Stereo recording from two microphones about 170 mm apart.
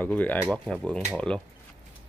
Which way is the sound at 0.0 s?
10° left (ahead or behind).